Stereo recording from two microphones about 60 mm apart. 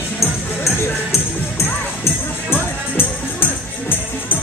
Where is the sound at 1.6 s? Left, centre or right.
Left.